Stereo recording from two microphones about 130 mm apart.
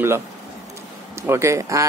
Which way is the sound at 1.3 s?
20° right (ahead or behind).